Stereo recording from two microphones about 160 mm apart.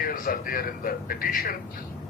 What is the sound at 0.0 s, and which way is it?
A man's voice, 65° left (ahead or behind).